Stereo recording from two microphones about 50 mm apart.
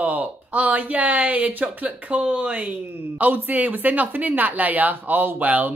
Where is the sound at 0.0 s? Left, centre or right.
Right.